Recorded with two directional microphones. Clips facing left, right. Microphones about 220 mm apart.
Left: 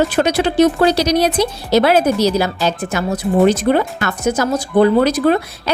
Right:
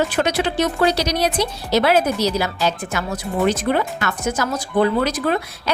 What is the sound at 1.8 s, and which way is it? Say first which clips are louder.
Speech: left 4 dB; 40° left (ahead or behind).